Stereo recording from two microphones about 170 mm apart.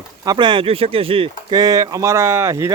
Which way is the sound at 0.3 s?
25° right (ahead or behind).